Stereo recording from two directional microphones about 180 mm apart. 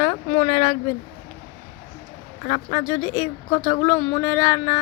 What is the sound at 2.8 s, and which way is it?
A woman's voice, 15° left (ahead or behind).